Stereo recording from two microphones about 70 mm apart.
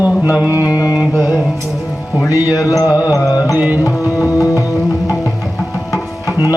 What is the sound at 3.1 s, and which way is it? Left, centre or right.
Music, left.